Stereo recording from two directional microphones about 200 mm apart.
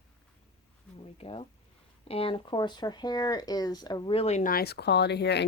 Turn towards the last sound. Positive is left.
turn(degrees=55)  # may be behind; listen again after turning